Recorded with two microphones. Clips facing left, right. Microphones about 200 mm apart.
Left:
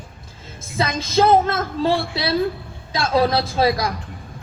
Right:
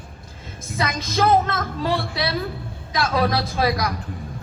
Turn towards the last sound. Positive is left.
turn(degrees=25)  # may be behind; listen again after turning